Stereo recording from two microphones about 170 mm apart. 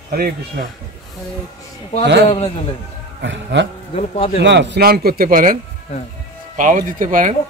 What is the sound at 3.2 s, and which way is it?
Speech, 90° right.